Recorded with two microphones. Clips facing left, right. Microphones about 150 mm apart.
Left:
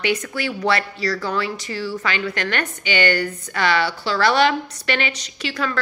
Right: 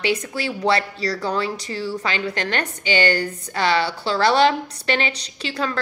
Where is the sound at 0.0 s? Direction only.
30° right (ahead or behind).